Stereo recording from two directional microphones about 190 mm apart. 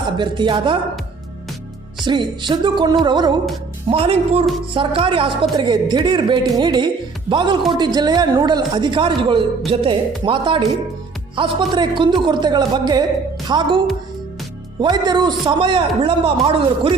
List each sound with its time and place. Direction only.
0.2 s a man's voice: 25° right (ahead or behind)
2.0 s a man's voice: 25° right (ahead or behind)